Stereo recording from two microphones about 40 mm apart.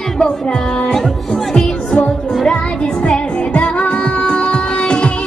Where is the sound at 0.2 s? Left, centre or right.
Left.